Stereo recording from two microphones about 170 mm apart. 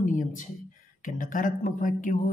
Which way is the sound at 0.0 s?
50° left (ahead or behind).